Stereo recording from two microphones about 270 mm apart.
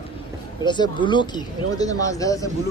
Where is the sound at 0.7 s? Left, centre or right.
Centre.